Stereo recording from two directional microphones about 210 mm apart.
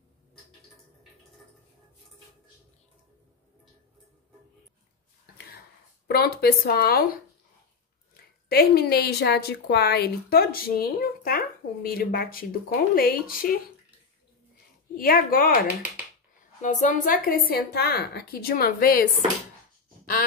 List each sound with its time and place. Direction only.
6.0 s speech: 45° left (ahead or behind)
8.5 s speech: 45° left (ahead or behind)
15.0 s speech: 45° left (ahead or behind)
15.6 s speech: 5° right (ahead or behind)
16.6 s speech: 35° left (ahead or behind)